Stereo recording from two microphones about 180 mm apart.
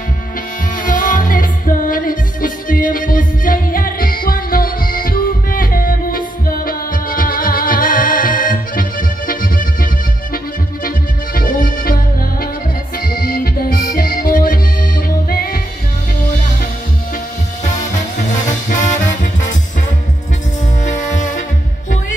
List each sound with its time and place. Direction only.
0.8 s music: 45° left (ahead or behind)
11.3 s music: 50° left (ahead or behind)
13.1 s accordion: 55° left (ahead or behind)
20.8 s music: 45° left (ahead or behind)